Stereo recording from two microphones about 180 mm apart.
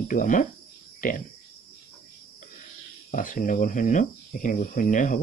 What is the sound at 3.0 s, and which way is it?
Speech, 50° left (ahead or behind).